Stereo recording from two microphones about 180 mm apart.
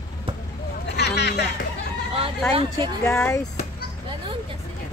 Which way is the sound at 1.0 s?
70° left (ahead or behind).